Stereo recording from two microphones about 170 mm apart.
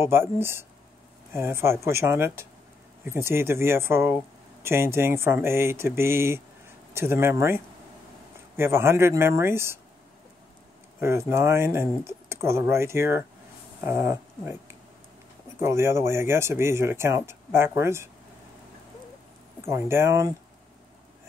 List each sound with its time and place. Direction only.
0.0 s speech: 15° right (ahead or behind)
11.0 s speech: 15° right (ahead or behind)
15.6 s speech: 15° right (ahead or behind)
19.6 s speech: 15° right (ahead or behind)